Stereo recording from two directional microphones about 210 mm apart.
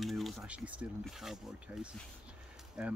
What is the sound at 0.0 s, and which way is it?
Speech, centre (ahead or behind).